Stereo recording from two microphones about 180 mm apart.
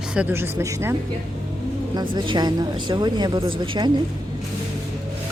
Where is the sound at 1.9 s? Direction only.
25° right (ahead or behind).